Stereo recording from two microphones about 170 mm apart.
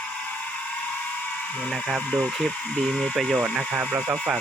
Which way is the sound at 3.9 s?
5° right (ahead or behind).